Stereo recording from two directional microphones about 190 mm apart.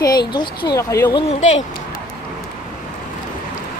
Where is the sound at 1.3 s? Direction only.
40° left (ahead or behind).